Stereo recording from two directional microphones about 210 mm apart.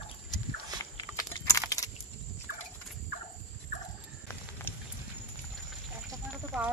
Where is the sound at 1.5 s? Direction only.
15° left (ahead or behind).